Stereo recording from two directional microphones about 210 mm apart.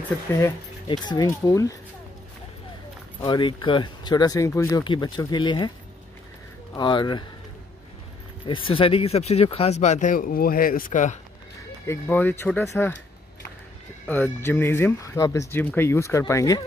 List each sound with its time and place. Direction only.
0.3 s speech: 10° left (ahead or behind)
3.2 s speech: 20° left (ahead or behind)
6.7 s speech: 20° left (ahead or behind)
8.5 s speech: 25° left (ahead or behind)
11.8 s speech: 10° left (ahead or behind)
14.0 s speech: 10° left (ahead or behind)